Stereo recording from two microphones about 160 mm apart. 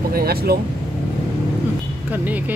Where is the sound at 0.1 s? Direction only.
70° right (ahead or behind).